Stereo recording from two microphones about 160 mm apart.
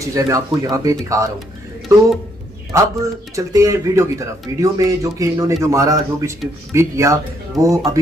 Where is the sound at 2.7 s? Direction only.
20° right (ahead or behind).